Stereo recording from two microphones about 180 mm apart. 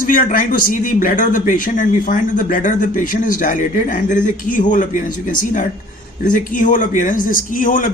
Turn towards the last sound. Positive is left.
turn(degrees=50)  # may be behind; listen again after turning